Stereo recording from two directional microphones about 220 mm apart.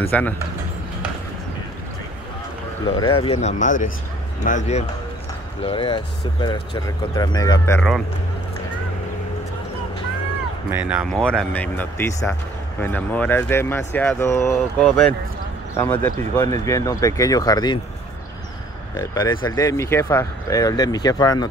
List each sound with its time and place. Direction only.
0.1 s speech: 5° left (ahead or behind)
3.0 s speech: 20° left (ahead or behind)
10.7 s speech: 5° right (ahead or behind); by 17.7 s 15° left (ahead or behind)
18.9 s speech: 20° left (ahead or behind)